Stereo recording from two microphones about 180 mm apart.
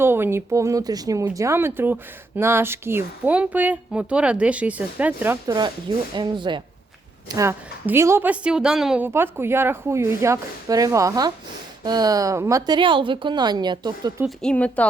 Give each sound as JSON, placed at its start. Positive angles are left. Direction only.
{"t": 0.0, "sound": "speech", "side_deg": -15}
{"t": 6.1, "sound": "speech", "side_deg": -25}
{"t": 14.3, "sound": "a woman's voice", "side_deg": 5}